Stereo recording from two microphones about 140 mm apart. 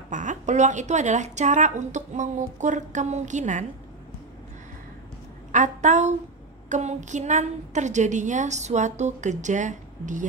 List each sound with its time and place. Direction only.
0.1 s a woman's voice: 60° right (ahead or behind)
5.5 s a woman's voice: 60° right (ahead or behind)